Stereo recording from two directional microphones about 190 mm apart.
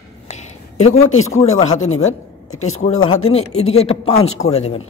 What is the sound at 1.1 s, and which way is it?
Speech, 90° left.